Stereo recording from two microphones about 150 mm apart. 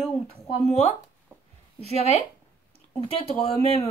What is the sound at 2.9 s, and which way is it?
Speech, 40° left (ahead or behind).